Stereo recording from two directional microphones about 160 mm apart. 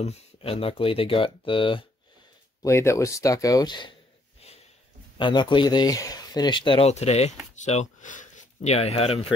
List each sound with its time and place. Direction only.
0.0 s speech: 40° left (ahead or behind)
2.6 s speech: 15° left (ahead or behind)
5.1 s speech: 30° left (ahead or behind)